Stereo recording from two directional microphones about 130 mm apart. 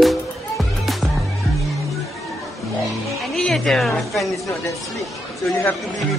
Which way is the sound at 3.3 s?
5° left (ahead or behind).